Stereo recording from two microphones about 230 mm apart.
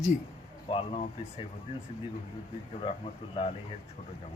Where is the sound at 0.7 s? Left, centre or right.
Left.